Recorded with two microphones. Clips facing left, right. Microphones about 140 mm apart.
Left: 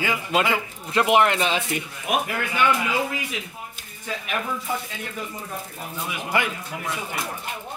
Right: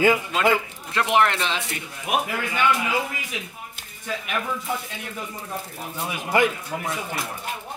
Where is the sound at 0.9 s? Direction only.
5° left (ahead or behind).